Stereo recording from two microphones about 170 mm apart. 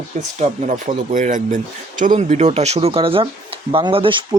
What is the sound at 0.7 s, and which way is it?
Speech, 50° right (ahead or behind).